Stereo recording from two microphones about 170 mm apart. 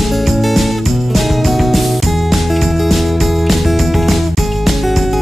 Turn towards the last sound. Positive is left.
turn(degrees=0)  # may be behind; listen again after turning